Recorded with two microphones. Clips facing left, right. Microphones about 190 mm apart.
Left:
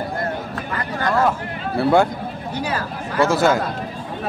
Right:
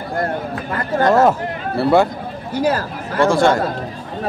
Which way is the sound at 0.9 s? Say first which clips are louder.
Right 6 dB; 40° right (ahead or behind).